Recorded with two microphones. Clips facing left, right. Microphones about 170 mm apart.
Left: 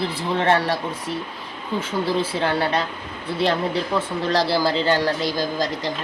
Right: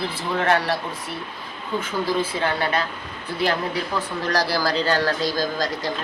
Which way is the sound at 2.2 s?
30° left (ahead or behind).